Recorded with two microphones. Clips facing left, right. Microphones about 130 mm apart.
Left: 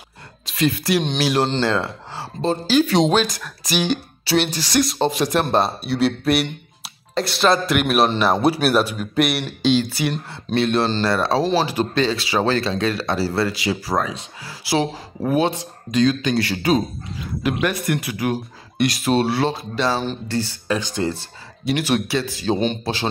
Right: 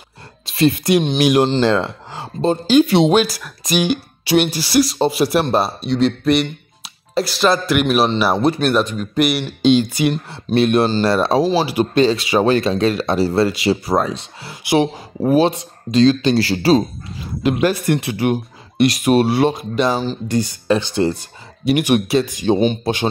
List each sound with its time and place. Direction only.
0.5 s a man's voice: 25° right (ahead or behind); by 9.5 s centre (ahead or behind)
9.6 s speech: 20° right (ahead or behind)
11.4 s speech: 10° right (ahead or behind)